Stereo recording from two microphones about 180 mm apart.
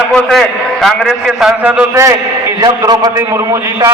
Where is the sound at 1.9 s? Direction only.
15° right (ahead or behind).